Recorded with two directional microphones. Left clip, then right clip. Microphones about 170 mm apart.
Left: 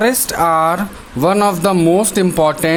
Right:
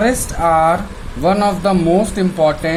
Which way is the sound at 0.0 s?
45° left (ahead or behind).